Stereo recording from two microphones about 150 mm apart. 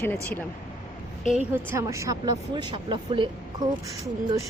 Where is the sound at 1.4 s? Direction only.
15° right (ahead or behind).